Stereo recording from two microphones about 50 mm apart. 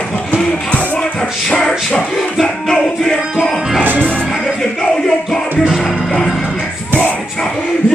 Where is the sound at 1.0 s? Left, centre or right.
Centre.